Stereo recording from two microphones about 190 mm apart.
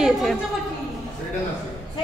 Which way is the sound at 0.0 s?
Centre (ahead or behind).